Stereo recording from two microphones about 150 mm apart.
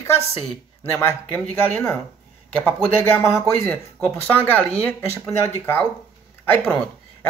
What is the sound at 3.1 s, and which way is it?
A man's voice, 15° left (ahead or behind).